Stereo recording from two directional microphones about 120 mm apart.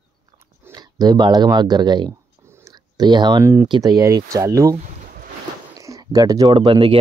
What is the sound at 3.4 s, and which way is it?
Speech, 20° right (ahead or behind).